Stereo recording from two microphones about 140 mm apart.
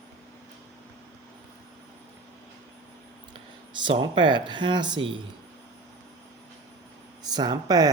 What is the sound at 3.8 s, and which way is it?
Speech, 35° right (ahead or behind).